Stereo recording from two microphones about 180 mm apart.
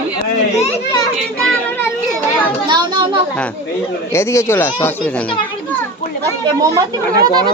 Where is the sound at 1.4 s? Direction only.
5° left (ahead or behind).